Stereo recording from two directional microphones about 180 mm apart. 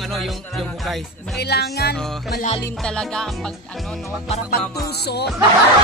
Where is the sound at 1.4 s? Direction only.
65° left (ahead or behind).